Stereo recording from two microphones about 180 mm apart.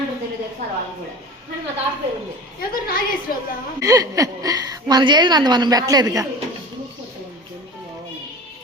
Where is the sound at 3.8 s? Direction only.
20° right (ahead or behind).